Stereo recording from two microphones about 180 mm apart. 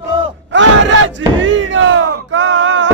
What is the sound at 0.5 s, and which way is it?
Battle cry, 85° right.